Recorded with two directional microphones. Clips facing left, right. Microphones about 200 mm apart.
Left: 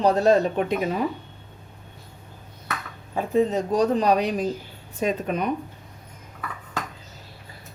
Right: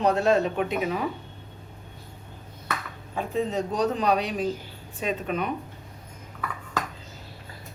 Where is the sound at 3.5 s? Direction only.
45° left (ahead or behind).